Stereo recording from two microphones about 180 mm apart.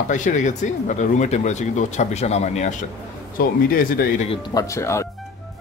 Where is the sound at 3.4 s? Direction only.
55° left (ahead or behind).